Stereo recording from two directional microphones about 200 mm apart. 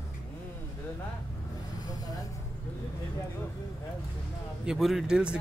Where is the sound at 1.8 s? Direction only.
20° left (ahead or behind).